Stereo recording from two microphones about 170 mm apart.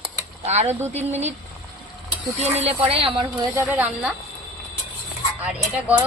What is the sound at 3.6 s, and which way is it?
Speech, 10° right (ahead or behind).